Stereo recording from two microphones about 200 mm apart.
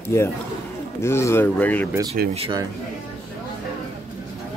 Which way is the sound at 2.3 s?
30° right (ahead or behind).